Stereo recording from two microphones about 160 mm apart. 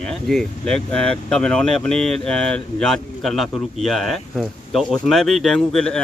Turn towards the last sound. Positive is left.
turn(degrees=5)  # may be behind; listen again after turning